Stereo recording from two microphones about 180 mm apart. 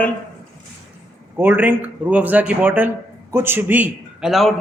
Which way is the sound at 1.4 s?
10° right (ahead or behind).